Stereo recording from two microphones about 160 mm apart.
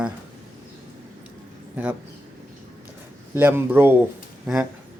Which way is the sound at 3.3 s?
15° right (ahead or behind).